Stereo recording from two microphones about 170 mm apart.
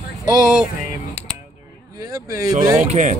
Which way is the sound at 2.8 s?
45° right (ahead or behind).